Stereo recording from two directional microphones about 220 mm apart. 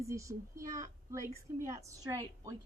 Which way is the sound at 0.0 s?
15° right (ahead or behind).